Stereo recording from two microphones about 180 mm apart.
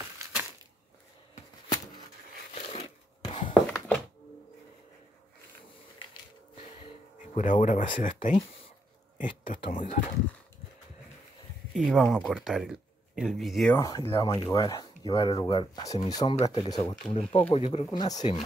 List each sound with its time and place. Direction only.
2.5 s a sound: 35° left (ahead or behind)
3.6 s thunk: 5° left (ahead or behind)
7.3 s speech: 45° left (ahead or behind)
11.7 s speech: centre (ahead or behind)
13.7 s speech: 20° left (ahead or behind)
17.3 s speech: 30° left (ahead or behind)
17.8 s speech: 20° left (ahead or behind)